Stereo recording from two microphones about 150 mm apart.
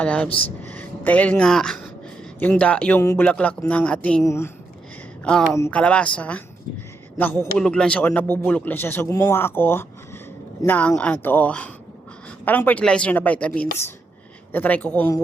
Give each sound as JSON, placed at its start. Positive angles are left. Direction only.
{"t": 0.0, "sound": "speech", "side_deg": 10}
{"t": 5.2, "sound": "speech", "side_deg": 5}
{"t": 7.6, "sound": "speech", "side_deg": 5}